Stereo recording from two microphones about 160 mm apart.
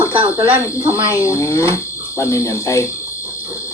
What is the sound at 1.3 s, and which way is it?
Cricket, 15° left (ahead or behind).